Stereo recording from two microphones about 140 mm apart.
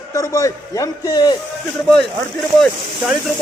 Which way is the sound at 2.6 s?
Centre (ahead or behind).